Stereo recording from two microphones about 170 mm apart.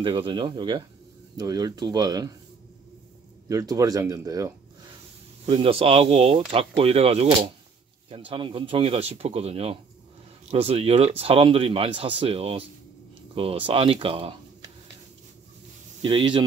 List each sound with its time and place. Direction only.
0.0 s speech: 30° right (ahead or behind)
3.4 s speech: 20° right (ahead or behind)
5.4 s speech: 35° right (ahead or behind)
16.0 s speech: 30° right (ahead or behind)